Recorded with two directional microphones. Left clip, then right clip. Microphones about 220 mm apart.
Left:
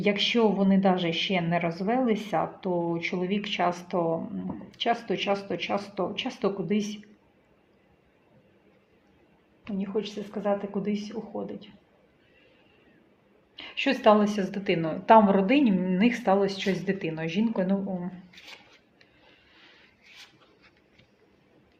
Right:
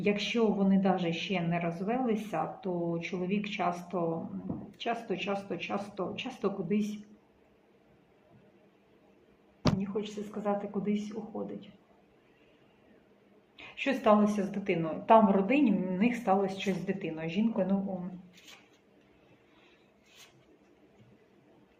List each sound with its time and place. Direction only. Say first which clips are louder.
0.0 s a woman's voice: left 6 dB; 40° left (ahead or behind)
9.8 s speech: left 5 dB; 40° left (ahead or behind)
13.6 s a woman's voice: left 5 dB; 50° left (ahead or behind)